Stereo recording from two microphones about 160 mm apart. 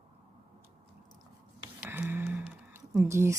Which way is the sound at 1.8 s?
10° right (ahead or behind).